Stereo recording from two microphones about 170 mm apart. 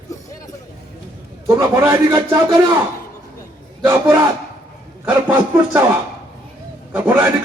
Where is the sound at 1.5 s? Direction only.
15° right (ahead or behind).